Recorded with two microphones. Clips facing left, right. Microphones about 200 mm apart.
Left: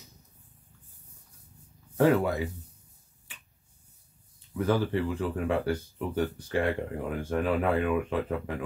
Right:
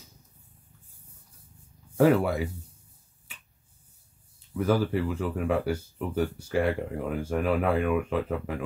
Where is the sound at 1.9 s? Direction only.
10° right (ahead or behind).